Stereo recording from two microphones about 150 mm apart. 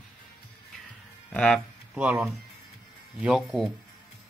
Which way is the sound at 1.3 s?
5° left (ahead or behind).